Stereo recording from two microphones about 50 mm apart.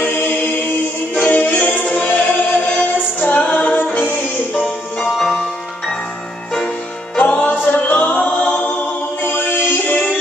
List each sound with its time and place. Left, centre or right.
0.0 s chant: left
1.1 s music: left
5.1 s music: centre
7.2 s music: left